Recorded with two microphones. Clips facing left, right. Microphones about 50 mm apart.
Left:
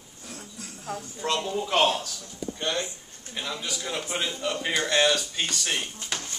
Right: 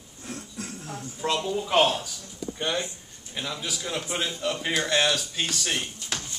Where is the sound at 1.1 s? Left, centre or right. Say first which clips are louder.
Right 1 dB; centre.